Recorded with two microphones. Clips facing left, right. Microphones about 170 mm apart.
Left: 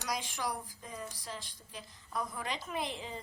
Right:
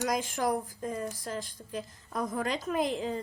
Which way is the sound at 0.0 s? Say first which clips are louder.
Right 8 dB; 50° right (ahead or behind).